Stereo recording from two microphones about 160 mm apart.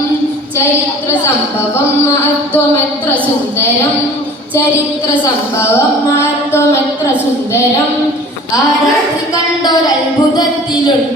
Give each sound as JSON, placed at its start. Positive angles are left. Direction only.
{"t": 6.1, "sound": "music", "side_deg": 15}